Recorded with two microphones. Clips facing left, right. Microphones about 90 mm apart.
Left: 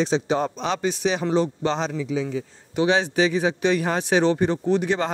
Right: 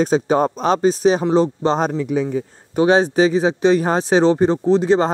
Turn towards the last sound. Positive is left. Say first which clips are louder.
# right 7 dB
turn(degrees=-30)  # may be behind; listen again after turning